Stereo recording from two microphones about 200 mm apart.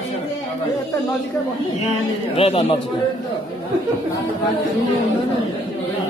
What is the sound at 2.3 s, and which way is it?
Speech, 30° left (ahead or behind).